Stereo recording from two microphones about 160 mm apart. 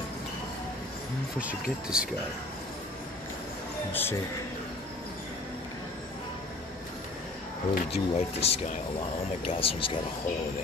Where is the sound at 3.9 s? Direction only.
15° left (ahead or behind).